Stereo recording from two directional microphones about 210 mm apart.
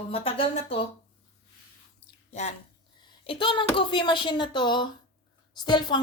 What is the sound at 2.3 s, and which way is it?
A woman's voice, 30° left (ahead or behind).